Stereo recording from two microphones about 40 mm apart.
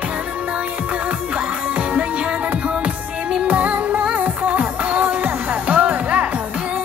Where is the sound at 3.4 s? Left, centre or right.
Right.